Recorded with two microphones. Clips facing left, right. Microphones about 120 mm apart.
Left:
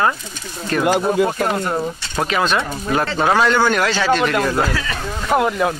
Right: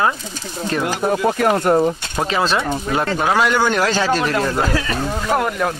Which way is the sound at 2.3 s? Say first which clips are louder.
Even; 30° right (ahead or behind).